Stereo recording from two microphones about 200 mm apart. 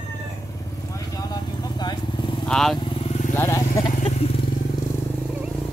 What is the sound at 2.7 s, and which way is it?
Motorcycle, 25° left (ahead or behind).